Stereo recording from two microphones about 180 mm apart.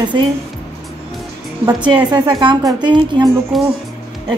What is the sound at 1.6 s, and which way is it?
A woman's voice, 25° right (ahead or behind).